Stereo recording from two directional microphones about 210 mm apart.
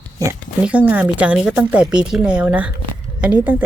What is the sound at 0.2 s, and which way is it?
A woman's voice, 15° right (ahead or behind).